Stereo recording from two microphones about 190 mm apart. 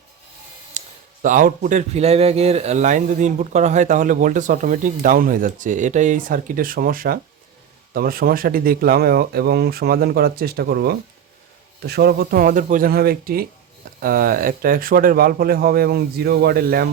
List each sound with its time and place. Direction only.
1.2 s speech: 45° right (ahead or behind)